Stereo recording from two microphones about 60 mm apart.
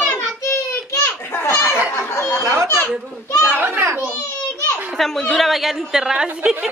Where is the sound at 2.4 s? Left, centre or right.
Right.